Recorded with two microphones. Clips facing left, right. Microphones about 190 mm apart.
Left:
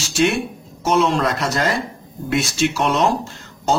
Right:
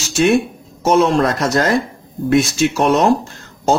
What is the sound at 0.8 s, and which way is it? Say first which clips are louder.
Speech: right 4 dB; 45° right (ahead or behind).